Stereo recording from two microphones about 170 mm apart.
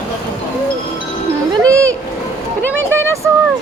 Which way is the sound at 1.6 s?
20° right (ahead or behind).